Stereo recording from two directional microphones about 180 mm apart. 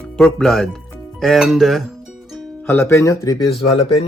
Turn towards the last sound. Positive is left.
turn(degrees=35)  # may be behind; listen again after turning